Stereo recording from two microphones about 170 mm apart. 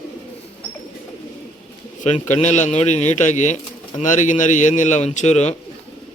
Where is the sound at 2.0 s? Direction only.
45° left (ahead or behind).